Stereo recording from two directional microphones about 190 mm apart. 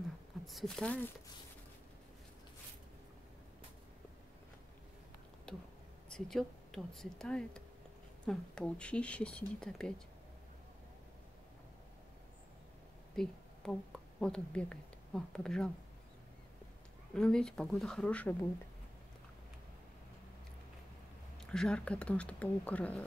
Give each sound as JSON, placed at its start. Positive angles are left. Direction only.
{"t": 0.5, "sound": "speech", "side_deg": 0}
{"t": 5.5, "sound": "speech", "side_deg": 5}
{"t": 13.1, "sound": "a sound", "side_deg": 5}
{"t": 14.2, "sound": "speech", "side_deg": 5}
{"t": 17.1, "sound": "speech", "side_deg": 5}
{"t": 21.4, "sound": "speech", "side_deg": 5}